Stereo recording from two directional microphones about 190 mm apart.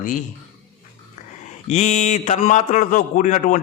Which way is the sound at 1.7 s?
35° left (ahead or behind).